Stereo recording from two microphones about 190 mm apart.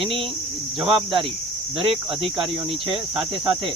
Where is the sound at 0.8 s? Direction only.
Centre (ahead or behind).